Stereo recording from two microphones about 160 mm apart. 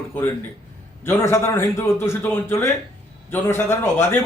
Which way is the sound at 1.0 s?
15° left (ahead or behind).